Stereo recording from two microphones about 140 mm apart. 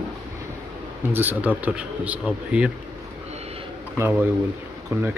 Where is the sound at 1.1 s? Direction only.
15° right (ahead or behind).